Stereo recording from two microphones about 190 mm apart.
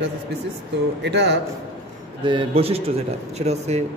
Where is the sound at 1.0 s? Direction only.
65° right (ahead or behind).